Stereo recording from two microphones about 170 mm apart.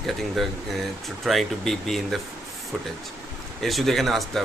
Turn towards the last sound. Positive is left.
turn(degrees=0)  # may be behind; listen again after turning